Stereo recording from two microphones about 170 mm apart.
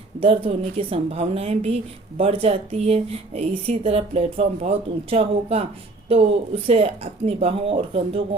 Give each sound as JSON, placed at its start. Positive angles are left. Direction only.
{"t": 0.2, "sound": "a woman's voice", "side_deg": -35}